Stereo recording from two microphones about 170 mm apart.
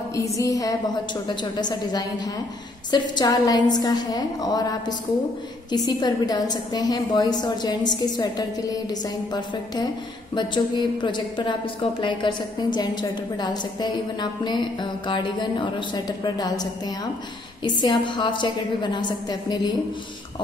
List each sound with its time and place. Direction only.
0.1 s a woman's voice: 20° left (ahead or behind)
10.3 s a woman's voice: 25° left (ahead or behind)